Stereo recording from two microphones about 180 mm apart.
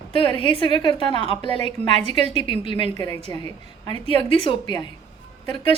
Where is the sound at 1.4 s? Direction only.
35° right (ahead or behind).